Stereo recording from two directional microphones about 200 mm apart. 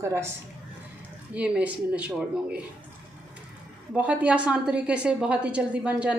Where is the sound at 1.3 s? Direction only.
5° right (ahead or behind).